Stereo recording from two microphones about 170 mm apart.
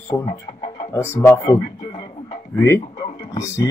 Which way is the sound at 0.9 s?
15° left (ahead or behind).